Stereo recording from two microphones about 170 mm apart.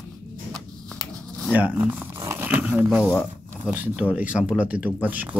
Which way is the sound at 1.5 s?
10° right (ahead or behind).